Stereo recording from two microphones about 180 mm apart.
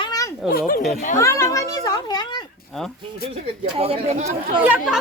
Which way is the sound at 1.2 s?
15° left (ahead or behind).